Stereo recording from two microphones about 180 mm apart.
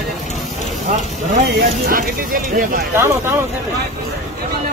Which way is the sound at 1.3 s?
55° right (ahead or behind).